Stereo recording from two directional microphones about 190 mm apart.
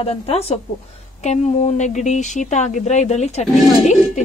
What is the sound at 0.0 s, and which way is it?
A woman's voice, 35° left (ahead or behind).